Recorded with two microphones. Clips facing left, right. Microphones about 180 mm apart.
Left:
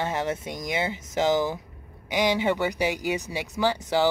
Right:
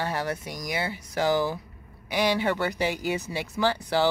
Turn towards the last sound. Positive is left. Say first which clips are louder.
# left 1 dB
turn(degrees=15)  # may be behind; listen again after turning